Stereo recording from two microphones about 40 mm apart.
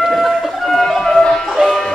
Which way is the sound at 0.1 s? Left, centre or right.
Centre.